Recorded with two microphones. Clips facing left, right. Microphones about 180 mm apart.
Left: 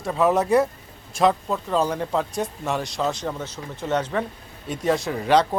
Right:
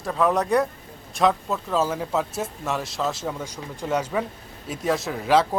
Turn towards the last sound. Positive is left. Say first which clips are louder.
# left 1 dB
turn(degrees=0)  # may be behind; listen again after turning